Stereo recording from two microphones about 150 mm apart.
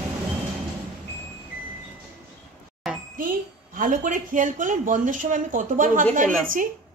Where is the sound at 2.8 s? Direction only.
Centre (ahead or behind).